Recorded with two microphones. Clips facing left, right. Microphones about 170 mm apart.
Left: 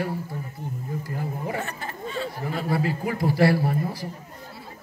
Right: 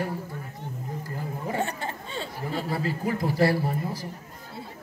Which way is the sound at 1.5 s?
30° right (ahead or behind).